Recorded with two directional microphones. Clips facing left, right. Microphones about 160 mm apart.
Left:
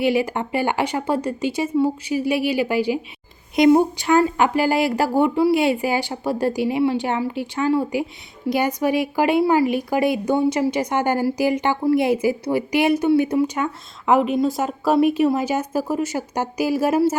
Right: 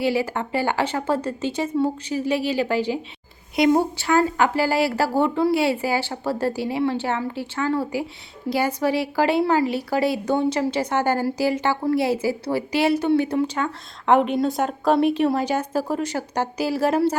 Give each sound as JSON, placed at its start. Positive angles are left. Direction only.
{"t": 0.0, "sound": "a woman's voice", "side_deg": 15}